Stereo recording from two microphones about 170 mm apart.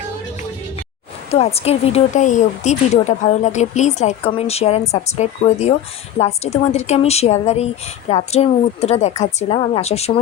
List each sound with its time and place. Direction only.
1.3 s speech: 35° left (ahead or behind)